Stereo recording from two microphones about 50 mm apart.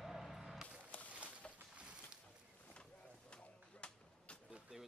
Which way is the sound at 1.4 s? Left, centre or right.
Centre.